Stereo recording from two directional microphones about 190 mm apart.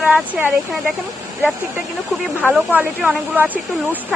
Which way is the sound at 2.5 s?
10° right (ahead or behind).